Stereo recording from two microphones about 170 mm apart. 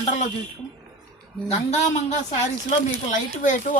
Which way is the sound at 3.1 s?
50° left (ahead or behind).